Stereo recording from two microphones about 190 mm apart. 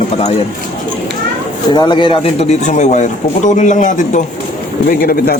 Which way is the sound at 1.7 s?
25° left (ahead or behind).